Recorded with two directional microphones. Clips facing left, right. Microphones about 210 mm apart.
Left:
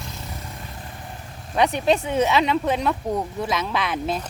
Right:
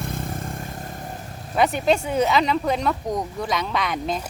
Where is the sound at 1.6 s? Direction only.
Centre (ahead or behind).